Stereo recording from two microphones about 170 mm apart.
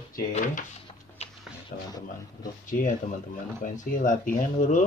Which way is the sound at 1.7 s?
55° left (ahead or behind).